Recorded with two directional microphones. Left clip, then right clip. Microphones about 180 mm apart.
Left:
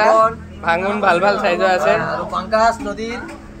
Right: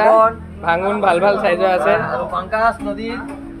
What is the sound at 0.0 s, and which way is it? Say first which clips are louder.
A man's voice: right 1 dB; 10° right (ahead or behind).